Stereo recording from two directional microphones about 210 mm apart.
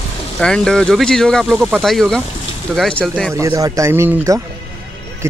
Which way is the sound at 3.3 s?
15° right (ahead or behind).